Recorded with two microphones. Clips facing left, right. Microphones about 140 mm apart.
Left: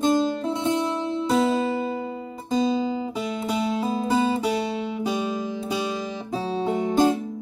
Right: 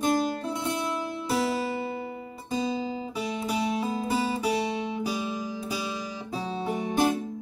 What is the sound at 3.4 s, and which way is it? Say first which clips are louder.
Music: left 3 dB; 25° left (ahead or behind).